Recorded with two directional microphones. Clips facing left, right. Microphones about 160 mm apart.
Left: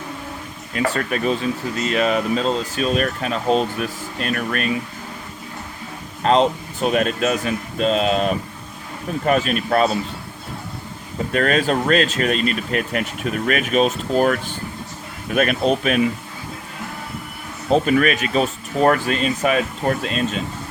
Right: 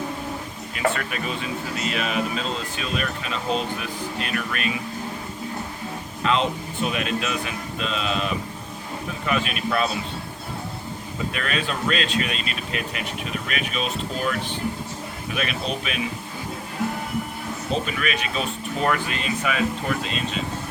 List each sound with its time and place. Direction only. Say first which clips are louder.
0.9 s speech: left 8 dB; 40° left (ahead or behind)
6.2 s speech: left 7 dB; 40° left (ahead or behind)
11.3 s speech: left 11 dB; 45° left (ahead or behind)
17.7 s speech: left 10 dB; 45° left (ahead or behind)